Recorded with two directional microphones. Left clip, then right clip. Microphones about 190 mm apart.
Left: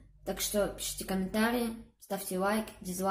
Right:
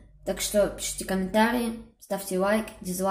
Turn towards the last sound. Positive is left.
turn(degrees=0)  # may be behind; listen again after turning